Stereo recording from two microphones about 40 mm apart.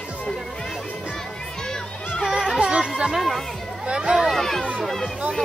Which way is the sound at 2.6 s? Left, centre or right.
Right.